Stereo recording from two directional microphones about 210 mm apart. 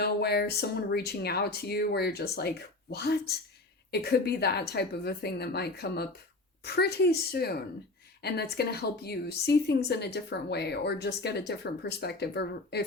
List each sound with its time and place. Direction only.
0.0 s a woman's voice: 50° left (ahead or behind)